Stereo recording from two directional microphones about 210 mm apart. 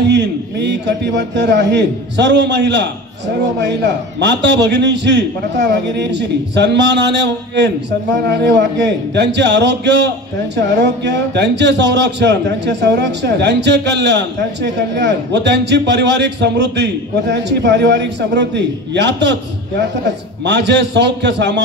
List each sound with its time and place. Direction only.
0.1 s a man's voice: 55° right (ahead or behind)
4.2 s a man's voice: 55° right (ahead or behind)
20.4 s a man's voice: 55° right (ahead or behind)